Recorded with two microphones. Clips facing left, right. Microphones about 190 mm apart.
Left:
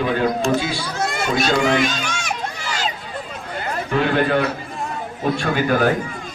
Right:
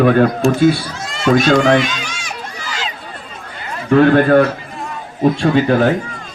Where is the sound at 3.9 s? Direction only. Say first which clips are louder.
Right 9 dB; 50° right (ahead or behind).